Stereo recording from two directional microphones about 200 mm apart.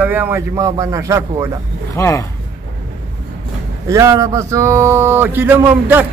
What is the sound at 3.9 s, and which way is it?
A man's voice, 15° right (ahead or behind).